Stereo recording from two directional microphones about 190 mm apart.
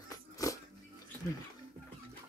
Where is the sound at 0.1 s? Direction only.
15° left (ahead or behind).